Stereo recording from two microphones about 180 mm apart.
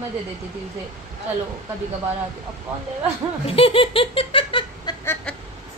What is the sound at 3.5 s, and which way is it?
Laughter, 30° left (ahead or behind).